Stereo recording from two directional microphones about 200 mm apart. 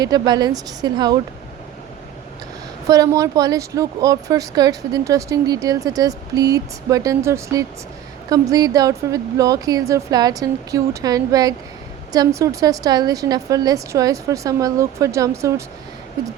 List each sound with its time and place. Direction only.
0.0 s speech: 20° right (ahead or behind)
2.9 s speech: 15° right (ahead or behind)